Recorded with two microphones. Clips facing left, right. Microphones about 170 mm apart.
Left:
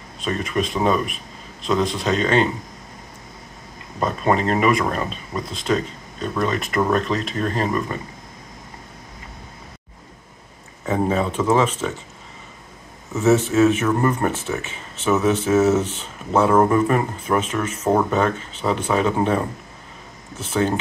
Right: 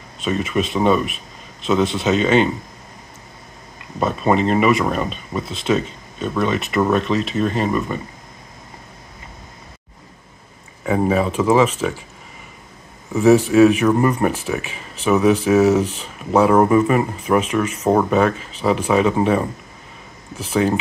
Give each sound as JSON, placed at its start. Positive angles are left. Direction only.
{"t": 0.2, "sound": "speech", "side_deg": -5}
{"t": 4.0, "sound": "speech", "side_deg": -5}
{"t": 10.9, "sound": "speech", "side_deg": -10}
{"t": 13.1, "sound": "speech", "side_deg": -15}